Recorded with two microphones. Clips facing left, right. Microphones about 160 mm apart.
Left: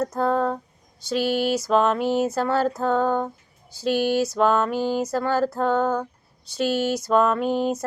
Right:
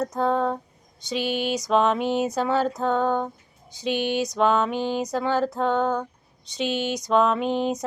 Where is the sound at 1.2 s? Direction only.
40° left (ahead or behind).